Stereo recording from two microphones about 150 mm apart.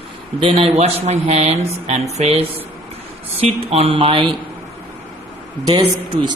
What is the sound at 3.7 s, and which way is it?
Speech, 40° right (ahead or behind).